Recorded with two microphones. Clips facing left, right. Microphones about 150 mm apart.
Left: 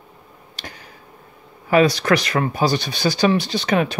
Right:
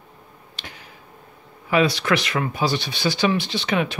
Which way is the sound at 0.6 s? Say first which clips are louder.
Left 3 dB; 40° left (ahead or behind).